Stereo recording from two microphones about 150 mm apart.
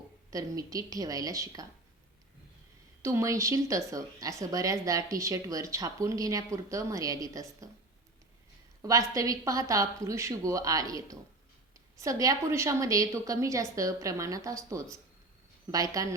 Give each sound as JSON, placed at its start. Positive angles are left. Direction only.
{"t": 0.3, "sound": "a woman's voice", "side_deg": -20}
{"t": 3.0, "sound": "a woman's voice", "side_deg": -20}
{"t": 8.8, "sound": "a woman's voice", "side_deg": -20}